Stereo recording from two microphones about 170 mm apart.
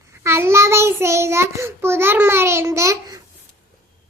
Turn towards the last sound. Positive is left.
turn(degrees=-20)  # may be behind; listen again after turning